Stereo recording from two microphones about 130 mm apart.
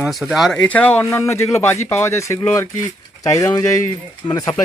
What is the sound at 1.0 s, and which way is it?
Speech, 25° left (ahead or behind).